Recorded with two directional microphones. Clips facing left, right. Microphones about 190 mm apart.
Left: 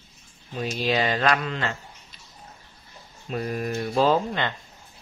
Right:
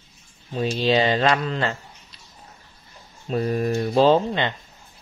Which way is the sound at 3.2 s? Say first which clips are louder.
Right 6 dB; 30° right (ahead or behind).